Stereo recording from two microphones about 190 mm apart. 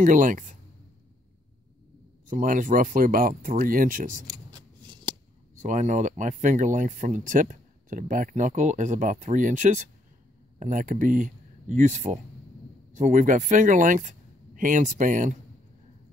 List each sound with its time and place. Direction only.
0.0 s speech: 45° right (ahead or behind)
2.2 s speech: 45° right (ahead or behind)
5.6 s speech: 40° right (ahead or behind)